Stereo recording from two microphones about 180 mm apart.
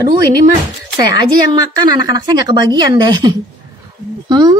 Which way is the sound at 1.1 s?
25° right (ahead or behind).